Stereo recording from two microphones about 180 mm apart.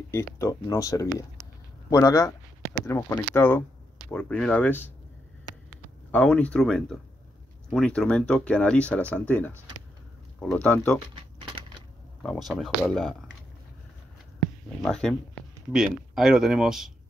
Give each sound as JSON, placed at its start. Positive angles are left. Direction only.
{"t": 0.1, "sound": "speech", "side_deg": 15}
{"t": 6.1, "sound": "speech", "side_deg": 5}
{"t": 11.1, "sound": "typing", "side_deg": -30}
{"t": 12.2, "sound": "speech", "side_deg": 0}
{"t": 14.8, "sound": "speech", "side_deg": 5}